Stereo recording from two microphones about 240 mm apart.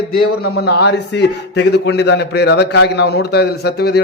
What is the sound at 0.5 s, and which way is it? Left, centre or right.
A man's voice, left.